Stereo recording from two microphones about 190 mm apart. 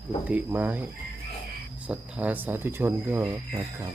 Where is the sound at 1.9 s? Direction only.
5° right (ahead or behind).